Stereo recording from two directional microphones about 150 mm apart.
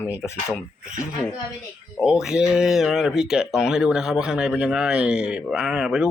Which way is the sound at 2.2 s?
5° right (ahead or behind).